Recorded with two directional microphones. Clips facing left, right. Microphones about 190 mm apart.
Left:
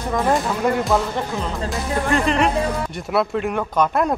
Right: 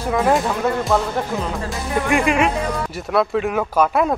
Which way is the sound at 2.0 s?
10° right (ahead or behind).